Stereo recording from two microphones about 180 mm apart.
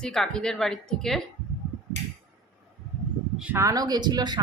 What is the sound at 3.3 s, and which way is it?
Speech, 10° right (ahead or behind).